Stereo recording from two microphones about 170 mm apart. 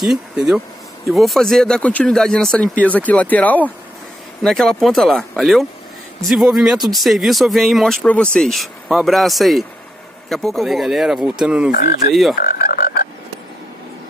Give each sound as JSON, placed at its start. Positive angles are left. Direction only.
{"t": 0.0, "sound": "speech", "side_deg": 0}
{"t": 11.7, "sound": "frog", "side_deg": 55}
{"t": 12.1, "sound": "speech", "side_deg": 0}
{"t": 12.4, "sound": "speech", "side_deg": 60}